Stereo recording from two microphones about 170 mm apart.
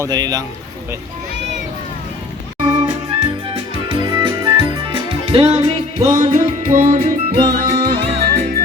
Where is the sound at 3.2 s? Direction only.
30° right (ahead or behind).